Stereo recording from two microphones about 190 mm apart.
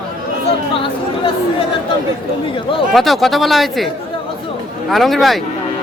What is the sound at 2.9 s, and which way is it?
Speech, centre (ahead or behind).